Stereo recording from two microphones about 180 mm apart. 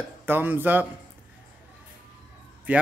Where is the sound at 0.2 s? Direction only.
10° right (ahead or behind).